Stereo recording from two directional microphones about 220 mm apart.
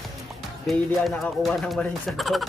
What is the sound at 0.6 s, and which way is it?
Speech, centre (ahead or behind).